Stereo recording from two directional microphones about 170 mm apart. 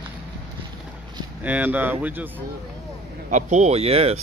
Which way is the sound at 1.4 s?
10° right (ahead or behind).